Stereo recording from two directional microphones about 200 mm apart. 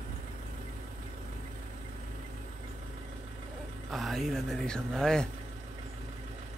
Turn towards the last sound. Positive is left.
turn(degrees=5)  # may be behind; listen again after turning